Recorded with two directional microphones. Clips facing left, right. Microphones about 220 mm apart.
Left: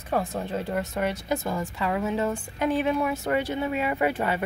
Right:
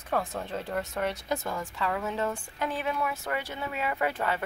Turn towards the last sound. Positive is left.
turn(degrees=15)  # may be behind; listen again after turning